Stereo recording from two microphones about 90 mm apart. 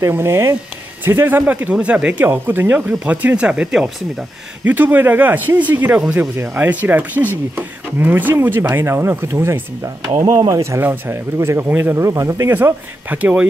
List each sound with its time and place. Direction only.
0.0 s speech: 30° right (ahead or behind); by 2.2 s 15° right (ahead or behind)
2.2 s speech: 25° right (ahead or behind)
4.6 s speech: 20° right (ahead or behind)
10.2 s speech: 45° right (ahead or behind)
10.6 s speech: 30° right (ahead or behind); by 13.5 s 15° right (ahead or behind)